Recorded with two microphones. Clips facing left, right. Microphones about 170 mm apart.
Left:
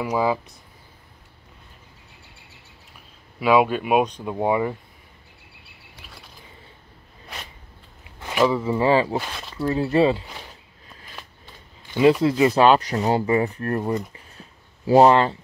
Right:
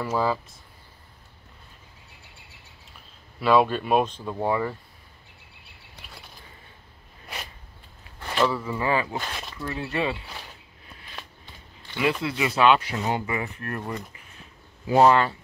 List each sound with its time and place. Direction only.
0.0 s speech: 15° left (ahead or behind)
3.3 s speech: 10° left (ahead or behind)
8.2 s speech: 15° left (ahead or behind); by 10.2 s 35° left (ahead or behind)
12.0 s speech: 40° left (ahead or behind)